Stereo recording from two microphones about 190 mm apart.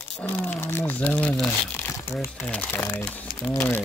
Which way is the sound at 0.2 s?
10° left (ahead or behind).